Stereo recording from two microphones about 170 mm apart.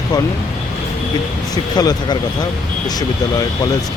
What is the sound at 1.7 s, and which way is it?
Speech, 25° left (ahead or behind).